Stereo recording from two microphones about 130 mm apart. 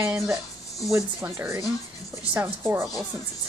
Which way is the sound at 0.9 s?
20° right (ahead or behind).